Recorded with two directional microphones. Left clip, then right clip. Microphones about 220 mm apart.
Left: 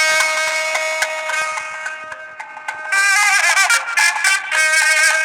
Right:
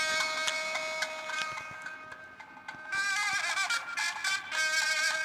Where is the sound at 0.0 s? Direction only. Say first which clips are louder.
Left 15 dB; 50° left (ahead or behind).